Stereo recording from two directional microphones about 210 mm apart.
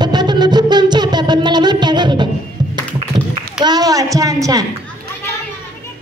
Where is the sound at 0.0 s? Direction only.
20° right (ahead or behind).